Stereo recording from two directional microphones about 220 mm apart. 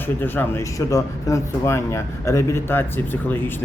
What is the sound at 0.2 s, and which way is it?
Speech, 10° left (ahead or behind).